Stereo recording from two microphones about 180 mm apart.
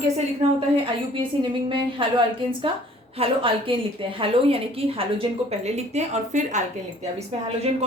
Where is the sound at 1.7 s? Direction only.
30° right (ahead or behind).